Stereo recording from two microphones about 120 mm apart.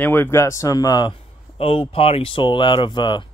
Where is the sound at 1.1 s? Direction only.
50° left (ahead or behind).